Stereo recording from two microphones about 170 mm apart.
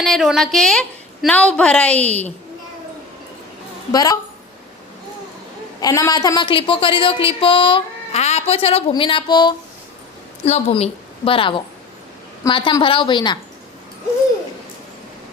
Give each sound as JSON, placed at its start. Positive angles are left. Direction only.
{"t": 0.0, "sound": "a woman's voice", "side_deg": 0}
{"t": 3.9, "sound": "a woman's voice", "side_deg": 20}
{"t": 5.8, "sound": "a woman's voice", "side_deg": 20}
{"t": 10.4, "sound": "a woman's voice", "side_deg": 40}